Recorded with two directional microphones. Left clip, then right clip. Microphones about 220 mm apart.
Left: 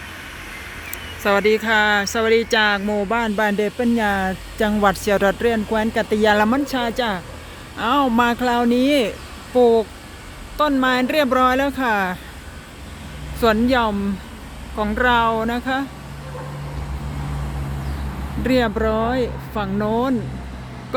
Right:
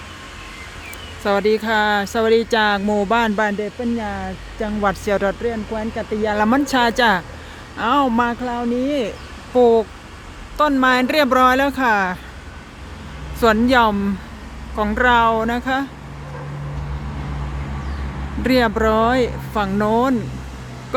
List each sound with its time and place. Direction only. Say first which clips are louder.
1.2 s speech: left 1 dB; 10° right (ahead or behind)
3.6 s speech: left 4 dB; 15° left (ahead or behind)
4.9 s speech: even; 5° left (ahead or behind)
6.4 s speech: right 3 dB; 5° right (ahead or behind); by 9.0 s 15° left (ahead or behind)
9.6 s speech: right 1 dB; 5° right (ahead or behind)
13.4 s speech: right 3 dB; 5° right (ahead or behind)
18.4 s speech: right 3 dB; 5° right (ahead or behind)